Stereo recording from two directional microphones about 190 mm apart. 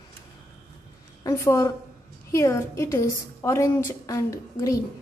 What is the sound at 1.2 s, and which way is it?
A woman's voice, 15° left (ahead or behind).